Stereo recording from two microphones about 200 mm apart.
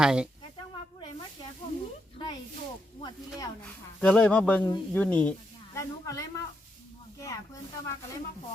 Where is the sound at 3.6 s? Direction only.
5° left (ahead or behind).